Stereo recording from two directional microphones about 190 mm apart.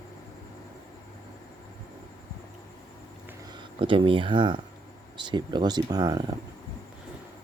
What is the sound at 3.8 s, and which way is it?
Speech, 30° right (ahead or behind).